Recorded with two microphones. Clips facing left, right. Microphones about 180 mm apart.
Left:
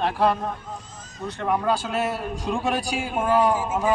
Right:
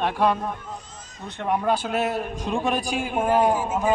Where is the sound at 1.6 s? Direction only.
20° right (ahead or behind).